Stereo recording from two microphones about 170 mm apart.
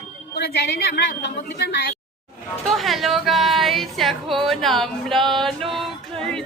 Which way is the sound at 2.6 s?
Centre (ahead or behind).